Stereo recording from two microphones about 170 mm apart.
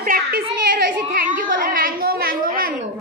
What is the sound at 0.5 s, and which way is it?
Children playing, 55° right (ahead or behind).